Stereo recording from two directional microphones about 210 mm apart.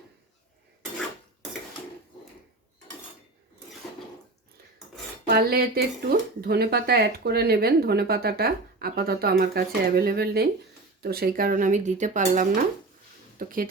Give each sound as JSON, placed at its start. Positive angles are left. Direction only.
{"t": 5.2, "sound": "speech", "side_deg": -45}